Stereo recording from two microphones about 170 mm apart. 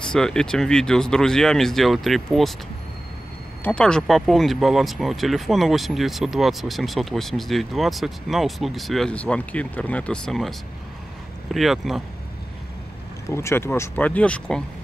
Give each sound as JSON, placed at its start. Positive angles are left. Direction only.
{"t": 0.0, "sound": "speech", "side_deg": 5}
{"t": 3.6, "sound": "speech", "side_deg": 5}
{"t": 11.5, "sound": "speech", "side_deg": 0}
{"t": 13.3, "sound": "speech", "side_deg": 15}